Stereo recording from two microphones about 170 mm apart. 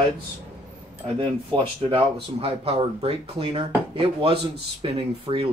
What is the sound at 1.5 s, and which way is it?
Speech, 30° right (ahead or behind).